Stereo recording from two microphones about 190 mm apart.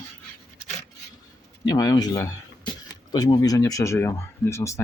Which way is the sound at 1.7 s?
20° left (ahead or behind).